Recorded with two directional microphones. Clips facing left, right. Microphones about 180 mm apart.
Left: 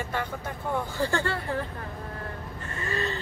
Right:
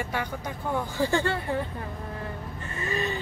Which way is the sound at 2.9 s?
15° right (ahead or behind).